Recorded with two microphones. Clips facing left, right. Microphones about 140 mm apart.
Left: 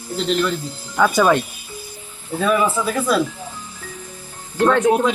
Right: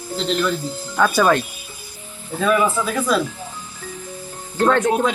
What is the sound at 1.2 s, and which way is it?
Speech, 15° left (ahead or behind).